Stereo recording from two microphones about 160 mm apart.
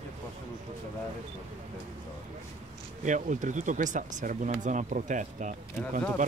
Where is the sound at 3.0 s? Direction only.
50° right (ahead or behind).